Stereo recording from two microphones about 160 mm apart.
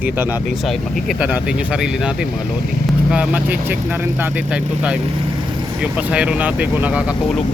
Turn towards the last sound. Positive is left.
turn(degrees=-5)  # may be behind; listen again after turning